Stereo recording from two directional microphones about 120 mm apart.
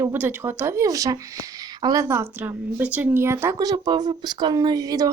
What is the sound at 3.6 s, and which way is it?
Speech, 35° right (ahead or behind).